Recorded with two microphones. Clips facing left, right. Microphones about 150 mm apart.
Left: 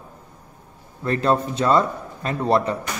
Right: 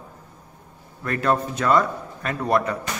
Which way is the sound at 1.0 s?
25° left (ahead or behind).